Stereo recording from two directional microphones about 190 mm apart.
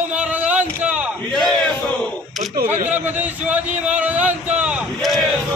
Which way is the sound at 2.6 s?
40° right (ahead or behind).